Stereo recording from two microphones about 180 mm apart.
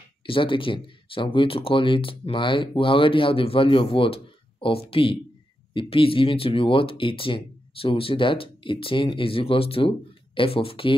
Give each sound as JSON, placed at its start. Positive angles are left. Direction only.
{"t": 0.3, "sound": "speech", "side_deg": 30}